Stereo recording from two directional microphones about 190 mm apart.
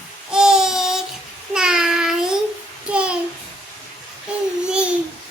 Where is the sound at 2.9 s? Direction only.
5° right (ahead or behind).